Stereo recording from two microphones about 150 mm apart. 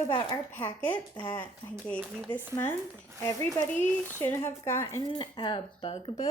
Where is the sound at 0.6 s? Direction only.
10° left (ahead or behind).